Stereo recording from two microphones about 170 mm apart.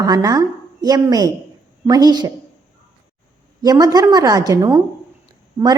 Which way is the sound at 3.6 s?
20° right (ahead or behind).